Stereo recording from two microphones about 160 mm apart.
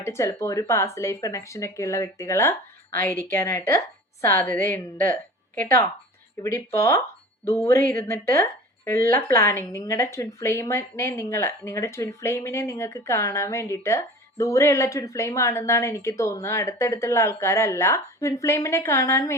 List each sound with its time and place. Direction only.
0.0 s a woman's voice: 15° left (ahead or behind)